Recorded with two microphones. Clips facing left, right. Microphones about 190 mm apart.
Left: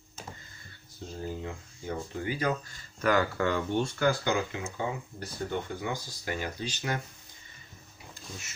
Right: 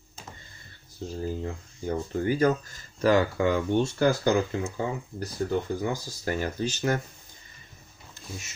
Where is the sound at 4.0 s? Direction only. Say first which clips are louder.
Right 4 dB; 40° right (ahead or behind).